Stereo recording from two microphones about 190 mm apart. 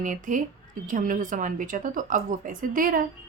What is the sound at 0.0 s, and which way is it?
A woman's voice, 40° right (ahead or behind).